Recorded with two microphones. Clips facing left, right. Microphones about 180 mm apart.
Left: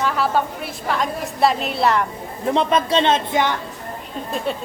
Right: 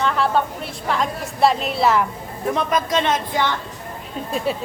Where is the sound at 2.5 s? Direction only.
30° left (ahead or behind).